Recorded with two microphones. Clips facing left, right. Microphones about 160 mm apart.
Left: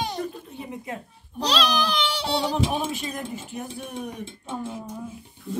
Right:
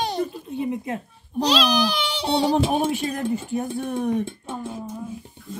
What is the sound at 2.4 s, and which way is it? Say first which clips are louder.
Speech: right 8 dB; 45° right (ahead or behind).